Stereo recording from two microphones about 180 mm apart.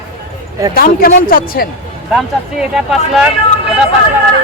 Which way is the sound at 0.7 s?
55° left (ahead or behind).